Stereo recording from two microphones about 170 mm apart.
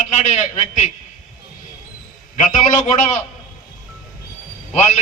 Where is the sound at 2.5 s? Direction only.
45° left (ahead or behind).